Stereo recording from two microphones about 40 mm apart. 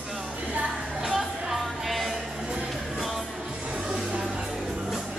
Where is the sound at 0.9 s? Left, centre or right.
Centre.